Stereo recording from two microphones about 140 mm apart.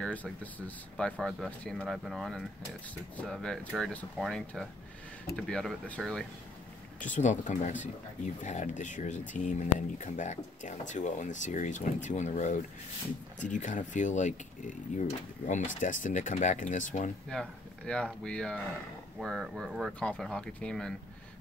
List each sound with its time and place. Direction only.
0.0 s speech: 10° left (ahead or behind)
7.0 s speech: 60° left (ahead or behind)
17.3 s speech: 5° left (ahead or behind)